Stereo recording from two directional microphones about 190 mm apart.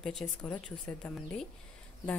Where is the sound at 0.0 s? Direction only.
5° left (ahead or behind).